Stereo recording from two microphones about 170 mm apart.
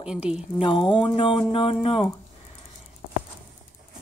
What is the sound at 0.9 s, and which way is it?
Speech, 30° left (ahead or behind).